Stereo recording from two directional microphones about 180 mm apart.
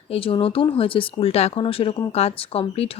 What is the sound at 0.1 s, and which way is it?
Speech, 30° left (ahead or behind).